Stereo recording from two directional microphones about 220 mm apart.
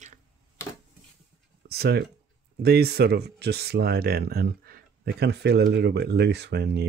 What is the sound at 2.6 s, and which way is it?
Speech, 45° right (ahead or behind).